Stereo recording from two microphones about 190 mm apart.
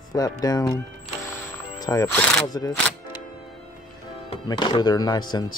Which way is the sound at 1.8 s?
20° left (ahead or behind).